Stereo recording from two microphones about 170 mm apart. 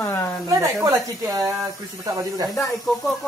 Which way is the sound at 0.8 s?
20° right (ahead or behind).